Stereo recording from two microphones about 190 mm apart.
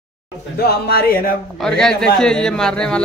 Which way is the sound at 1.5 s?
5° left (ahead or behind).